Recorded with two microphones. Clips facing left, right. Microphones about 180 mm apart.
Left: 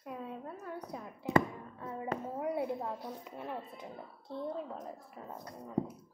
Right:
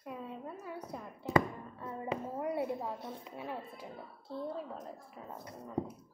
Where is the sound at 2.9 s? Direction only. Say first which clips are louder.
Left 1 dB; 25° right (ahead or behind).